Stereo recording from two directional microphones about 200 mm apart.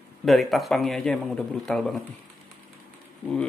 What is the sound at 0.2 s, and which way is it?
Speech, centre (ahead or behind).